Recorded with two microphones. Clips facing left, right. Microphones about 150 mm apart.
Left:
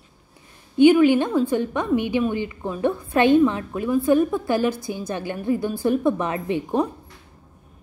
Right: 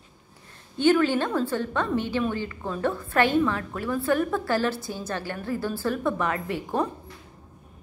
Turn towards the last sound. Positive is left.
turn(degrees=20)  # may be behind; listen again after turning